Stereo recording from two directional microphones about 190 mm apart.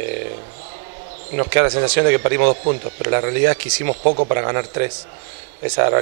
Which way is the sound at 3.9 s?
30° right (ahead or behind).